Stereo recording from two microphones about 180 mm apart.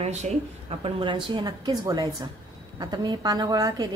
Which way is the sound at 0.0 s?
40° right (ahead or behind).